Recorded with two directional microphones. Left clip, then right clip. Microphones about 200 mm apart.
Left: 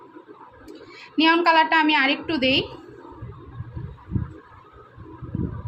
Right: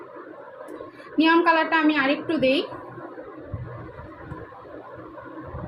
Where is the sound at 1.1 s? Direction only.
35° left (ahead or behind).